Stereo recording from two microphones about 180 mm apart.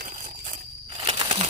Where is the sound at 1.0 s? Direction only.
30° right (ahead or behind).